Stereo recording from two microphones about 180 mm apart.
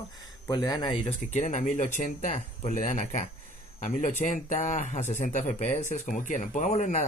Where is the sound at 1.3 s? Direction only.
40° left (ahead or behind).